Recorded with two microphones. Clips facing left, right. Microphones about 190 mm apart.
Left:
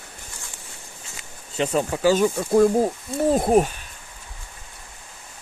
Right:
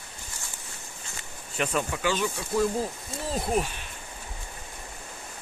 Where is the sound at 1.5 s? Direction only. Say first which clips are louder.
Left 6 dB; 30° left (ahead or behind); by 3.7 s 50° left (ahead or behind).